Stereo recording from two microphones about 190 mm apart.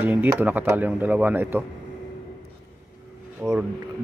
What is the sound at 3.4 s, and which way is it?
Speech, 10° right (ahead or behind).